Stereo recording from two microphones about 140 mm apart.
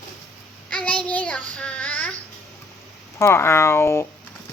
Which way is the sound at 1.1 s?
10° left (ahead or behind).